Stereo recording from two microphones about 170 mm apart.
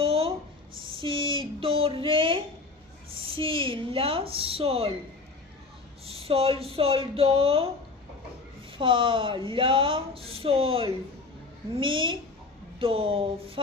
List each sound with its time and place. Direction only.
0.0 s a sound: 35° right (ahead or behind)
3.2 s speech: 30° right (ahead or behind)
6.1 s speech: 35° right (ahead or behind)
8.8 s speech: 30° right (ahead or behind)